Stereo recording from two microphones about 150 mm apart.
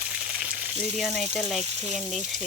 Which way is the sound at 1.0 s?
Centre (ahead or behind).